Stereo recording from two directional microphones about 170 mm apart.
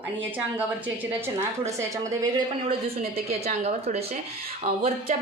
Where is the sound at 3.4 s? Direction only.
40° right (ahead or behind).